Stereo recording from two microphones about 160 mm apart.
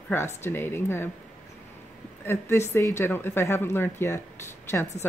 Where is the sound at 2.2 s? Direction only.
15° left (ahead or behind).